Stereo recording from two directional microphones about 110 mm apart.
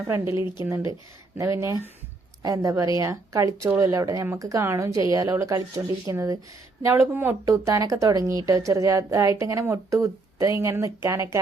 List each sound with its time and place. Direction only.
0.1 s a woman's voice: 25° right (ahead or behind)
6.8 s a woman's voice: 20° right (ahead or behind)
7.4 s a woman's voice: 30° right (ahead or behind)